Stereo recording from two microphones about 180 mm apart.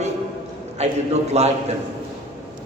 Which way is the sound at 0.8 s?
35° right (ahead or behind).